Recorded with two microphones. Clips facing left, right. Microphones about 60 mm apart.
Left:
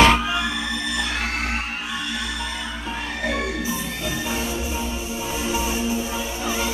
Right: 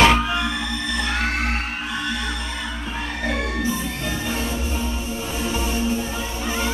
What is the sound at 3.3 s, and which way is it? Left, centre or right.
Music, centre.